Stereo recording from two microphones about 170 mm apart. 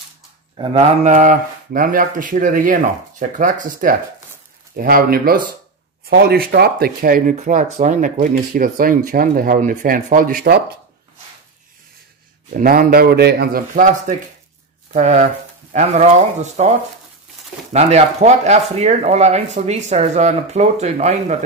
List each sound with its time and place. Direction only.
1.0 s speech: 50° right (ahead or behind); by 10.8 s 70° right (ahead or behind)
12.5 s speech: 55° right (ahead or behind)
14.9 s speech: 40° right (ahead or behind)
17.7 s speech: 40° right (ahead or behind)